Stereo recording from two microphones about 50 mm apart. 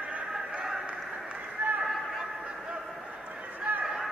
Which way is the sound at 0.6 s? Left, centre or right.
Centre.